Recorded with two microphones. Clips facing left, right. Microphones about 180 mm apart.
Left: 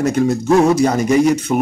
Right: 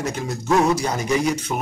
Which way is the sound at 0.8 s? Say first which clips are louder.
Left 8 dB; 55° left (ahead or behind).